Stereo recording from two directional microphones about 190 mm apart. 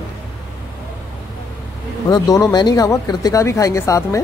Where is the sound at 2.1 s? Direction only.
20° left (ahead or behind).